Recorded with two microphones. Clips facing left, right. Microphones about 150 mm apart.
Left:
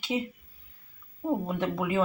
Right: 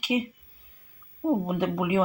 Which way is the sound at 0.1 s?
10° right (ahead or behind).